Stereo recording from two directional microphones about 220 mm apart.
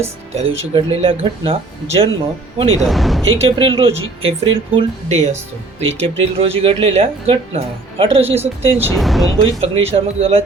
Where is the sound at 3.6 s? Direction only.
25° right (ahead or behind).